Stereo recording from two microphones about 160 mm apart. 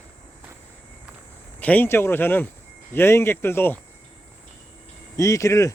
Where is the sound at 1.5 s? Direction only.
10° left (ahead or behind).